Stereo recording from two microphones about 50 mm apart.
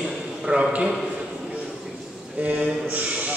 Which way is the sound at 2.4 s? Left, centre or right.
Right.